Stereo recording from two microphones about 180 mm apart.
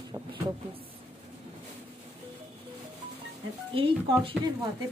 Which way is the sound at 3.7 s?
30° right (ahead or behind).